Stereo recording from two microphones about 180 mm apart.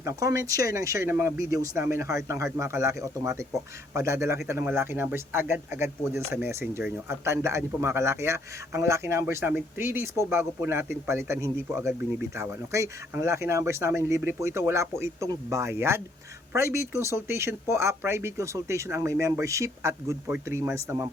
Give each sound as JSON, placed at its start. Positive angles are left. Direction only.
{"t": 0.0, "sound": "speech", "side_deg": -20}